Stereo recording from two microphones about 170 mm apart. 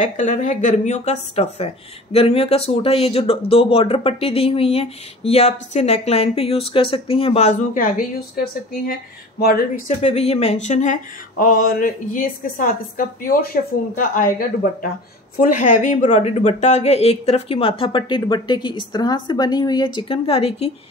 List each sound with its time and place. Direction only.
0.0 s speech: 45° left (ahead or behind)
9.8 s speech: 40° left (ahead or behind)